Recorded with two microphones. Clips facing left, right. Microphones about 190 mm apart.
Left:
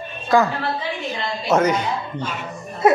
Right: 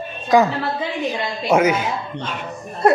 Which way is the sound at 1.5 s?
10° right (ahead or behind).